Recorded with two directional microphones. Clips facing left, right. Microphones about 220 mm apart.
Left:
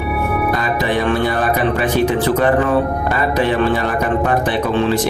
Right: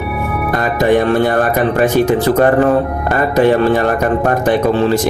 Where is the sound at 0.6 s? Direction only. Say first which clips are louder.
Right 5 dB; 45° right (ahead or behind).